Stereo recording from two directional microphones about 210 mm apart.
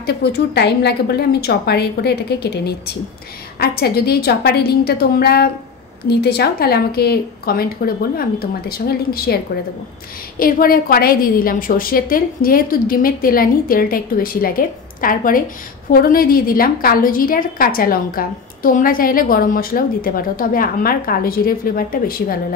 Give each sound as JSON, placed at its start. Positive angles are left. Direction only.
{"t": 0.0, "sound": "a woman's voice", "side_deg": 50}
{"t": 10.4, "sound": "a woman's voice", "side_deg": 45}